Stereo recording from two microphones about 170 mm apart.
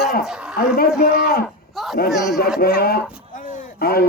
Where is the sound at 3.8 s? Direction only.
65° left (ahead or behind).